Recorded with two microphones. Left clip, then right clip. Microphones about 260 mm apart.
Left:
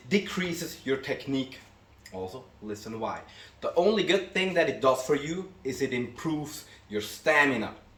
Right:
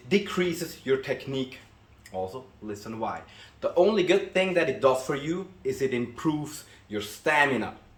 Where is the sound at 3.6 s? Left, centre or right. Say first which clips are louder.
Right 2 dB; centre.